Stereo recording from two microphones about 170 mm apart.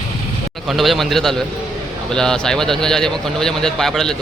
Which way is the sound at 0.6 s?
Centre (ahead or behind).